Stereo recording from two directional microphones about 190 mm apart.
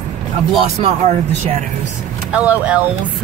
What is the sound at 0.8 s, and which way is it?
Speech, 35° right (ahead or behind).